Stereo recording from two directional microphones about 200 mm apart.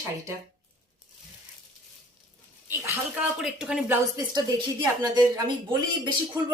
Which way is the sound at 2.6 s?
15° right (ahead or behind).